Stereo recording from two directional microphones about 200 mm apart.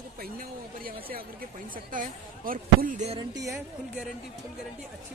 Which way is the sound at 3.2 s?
20° right (ahead or behind).